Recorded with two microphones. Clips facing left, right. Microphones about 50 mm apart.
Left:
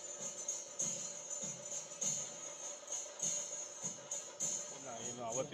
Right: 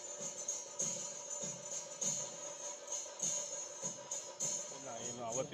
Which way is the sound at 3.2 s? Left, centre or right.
Left.